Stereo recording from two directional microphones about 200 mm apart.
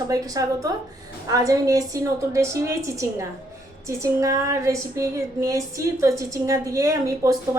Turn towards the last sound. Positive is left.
turn(degrees=-15)  # may be behind; listen again after turning